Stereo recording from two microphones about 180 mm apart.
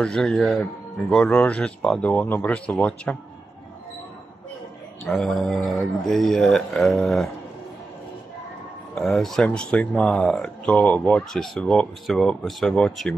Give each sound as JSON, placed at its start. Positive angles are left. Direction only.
{"t": 0.0, "sound": "speech", "side_deg": 5}
{"t": 5.0, "sound": "speech", "side_deg": 0}
{"t": 8.9, "sound": "speech", "side_deg": 0}